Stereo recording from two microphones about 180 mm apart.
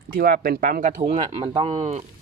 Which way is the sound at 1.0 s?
30° right (ahead or behind).